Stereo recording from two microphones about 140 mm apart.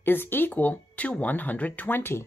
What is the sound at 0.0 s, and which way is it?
Speech, 15° left (ahead or behind).